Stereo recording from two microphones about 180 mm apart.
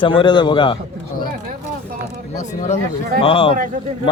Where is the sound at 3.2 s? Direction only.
30° left (ahead or behind).